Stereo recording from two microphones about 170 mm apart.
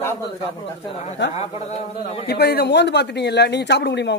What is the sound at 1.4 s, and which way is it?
Speech, 40° left (ahead or behind).